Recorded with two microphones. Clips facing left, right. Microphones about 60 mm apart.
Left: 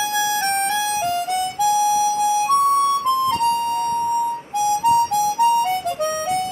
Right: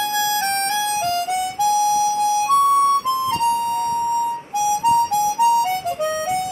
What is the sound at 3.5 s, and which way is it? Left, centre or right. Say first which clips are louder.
Siren: even; left.